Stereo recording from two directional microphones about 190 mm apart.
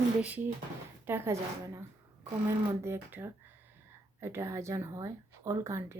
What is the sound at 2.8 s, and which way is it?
A woman's voice, 10° right (ahead or behind).